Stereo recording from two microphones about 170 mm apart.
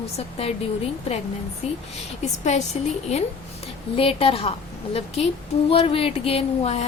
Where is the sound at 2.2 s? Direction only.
40° left (ahead or behind).